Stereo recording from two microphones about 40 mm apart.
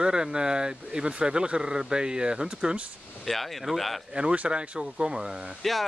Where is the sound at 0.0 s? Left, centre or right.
Right.